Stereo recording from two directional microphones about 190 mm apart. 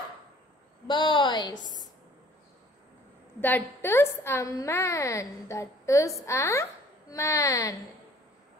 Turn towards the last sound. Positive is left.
turn(degrees=15)  # may be behind; listen again after turning